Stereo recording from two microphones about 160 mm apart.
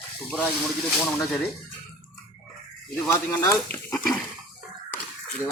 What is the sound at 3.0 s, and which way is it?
Speech, 15° left (ahead or behind).